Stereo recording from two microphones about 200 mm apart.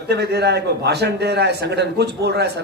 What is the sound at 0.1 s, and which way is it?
A man's voice, 55° right (ahead or behind).